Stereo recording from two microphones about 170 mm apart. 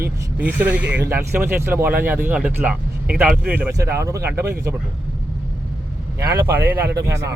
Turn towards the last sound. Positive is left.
turn(degrees=-15)  # may be behind; listen again after turning